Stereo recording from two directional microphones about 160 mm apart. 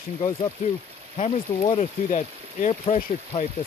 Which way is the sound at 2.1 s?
45° left (ahead or behind).